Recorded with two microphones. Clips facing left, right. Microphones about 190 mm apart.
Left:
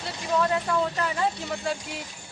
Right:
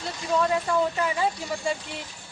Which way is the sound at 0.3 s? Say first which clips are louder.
Right 1 dB; centre (ahead or behind).